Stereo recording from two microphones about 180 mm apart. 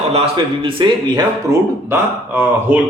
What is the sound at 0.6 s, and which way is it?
Speech, 30° right (ahead or behind).